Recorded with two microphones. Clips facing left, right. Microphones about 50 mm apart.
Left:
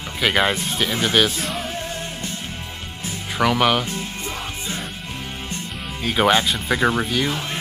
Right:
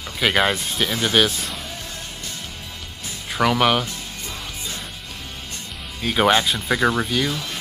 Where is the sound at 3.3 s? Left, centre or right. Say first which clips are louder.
Even; centre.